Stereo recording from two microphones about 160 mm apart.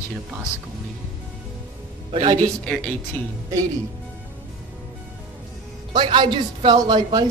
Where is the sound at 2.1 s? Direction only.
35° right (ahead or behind).